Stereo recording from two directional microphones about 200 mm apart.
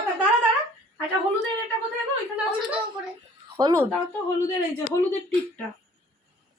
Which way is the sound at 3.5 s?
20° right (ahead or behind).